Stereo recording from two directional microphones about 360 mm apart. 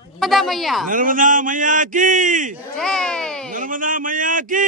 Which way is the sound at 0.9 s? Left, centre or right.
Right.